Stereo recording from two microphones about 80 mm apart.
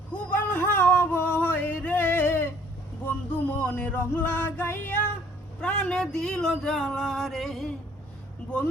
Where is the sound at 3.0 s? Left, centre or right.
Left.